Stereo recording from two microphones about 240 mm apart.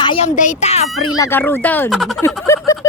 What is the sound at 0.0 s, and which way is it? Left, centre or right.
Speech, left.